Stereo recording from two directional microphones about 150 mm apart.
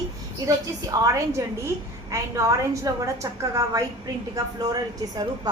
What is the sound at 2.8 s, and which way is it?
Speech, 20° right (ahead or behind).